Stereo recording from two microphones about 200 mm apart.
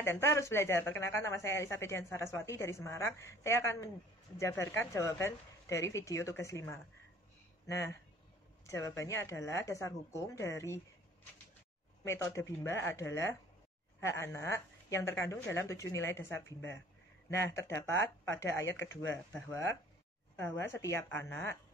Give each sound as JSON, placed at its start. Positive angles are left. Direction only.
{"t": 0.0, "sound": "speech", "side_deg": 15}
{"t": 12.0, "sound": "speech", "side_deg": 15}